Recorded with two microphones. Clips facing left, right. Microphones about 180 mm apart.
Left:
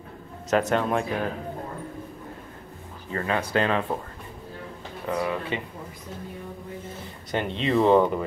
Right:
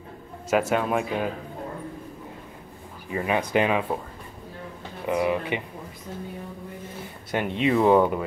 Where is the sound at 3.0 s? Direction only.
15° right (ahead or behind).